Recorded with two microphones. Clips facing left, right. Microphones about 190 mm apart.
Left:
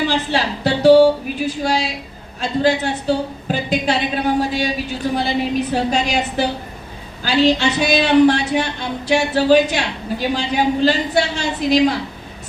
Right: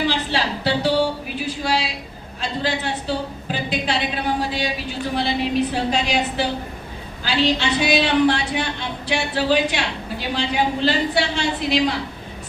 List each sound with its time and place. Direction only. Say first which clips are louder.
0.1 s music: left 3 dB; 45° left (ahead or behind)
2.4 s a woman's voice: left 7 dB; 45° left (ahead or behind)
4.4 s a sound: left 5 dB; 45° left (ahead or behind)
5.1 s a woman's voice: left 1 dB; 45° left (ahead or behind)